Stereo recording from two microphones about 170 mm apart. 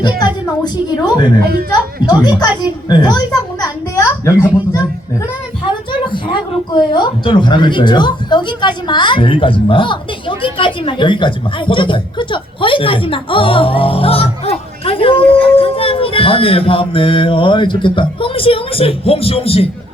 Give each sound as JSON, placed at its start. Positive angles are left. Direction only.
{"t": 0.6, "sound": "a woman's voice", "side_deg": 25}
{"t": 3.6, "sound": "a sound", "side_deg": 20}
{"t": 6.1, "sound": "speech", "side_deg": 25}